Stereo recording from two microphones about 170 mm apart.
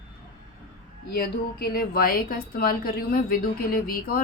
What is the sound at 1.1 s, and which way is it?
A woman's voice, 65° left (ahead or behind).